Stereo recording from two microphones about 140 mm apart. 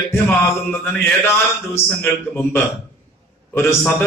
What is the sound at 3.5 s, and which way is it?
Speech, 15° left (ahead or behind).